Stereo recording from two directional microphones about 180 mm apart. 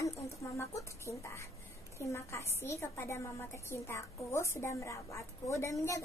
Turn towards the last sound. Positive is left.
turn(degrees=15)  # may be behind; listen again after turning